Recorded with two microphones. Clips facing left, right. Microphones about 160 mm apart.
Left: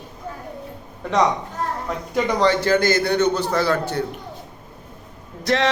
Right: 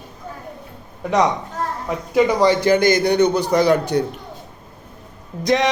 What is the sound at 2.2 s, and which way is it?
A man's voice, 10° right (ahead or behind).